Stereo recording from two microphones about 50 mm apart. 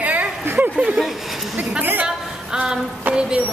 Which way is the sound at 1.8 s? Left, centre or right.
Right.